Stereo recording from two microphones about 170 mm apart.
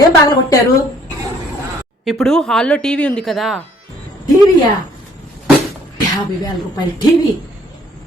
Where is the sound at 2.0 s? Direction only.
Centre (ahead or behind).